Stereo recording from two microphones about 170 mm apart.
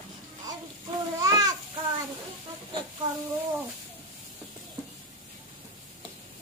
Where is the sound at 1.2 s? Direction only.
20° right (ahead or behind).